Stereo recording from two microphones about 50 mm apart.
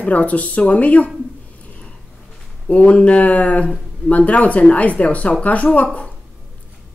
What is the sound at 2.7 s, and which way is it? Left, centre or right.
Speech, left.